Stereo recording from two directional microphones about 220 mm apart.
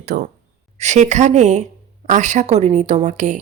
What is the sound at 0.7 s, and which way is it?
A woman's voice, 30° right (ahead or behind).